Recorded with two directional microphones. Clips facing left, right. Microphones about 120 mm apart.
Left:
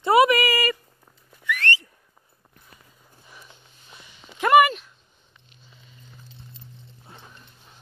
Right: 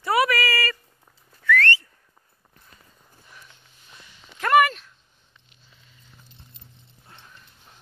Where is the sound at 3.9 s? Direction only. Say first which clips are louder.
Left 2 dB; 10° left (ahead or behind).